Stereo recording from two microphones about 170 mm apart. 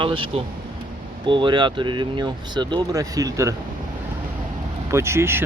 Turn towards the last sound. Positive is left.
turn(degrees=-15)  # may be behind; listen again after turning